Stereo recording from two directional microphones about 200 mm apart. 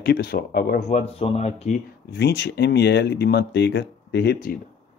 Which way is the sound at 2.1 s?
55° left (ahead or behind).